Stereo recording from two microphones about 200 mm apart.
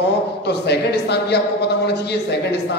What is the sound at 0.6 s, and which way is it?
A man's voice, 55° left (ahead or behind).